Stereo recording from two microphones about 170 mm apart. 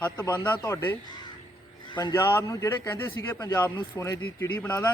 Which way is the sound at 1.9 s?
25° left (ahead or behind).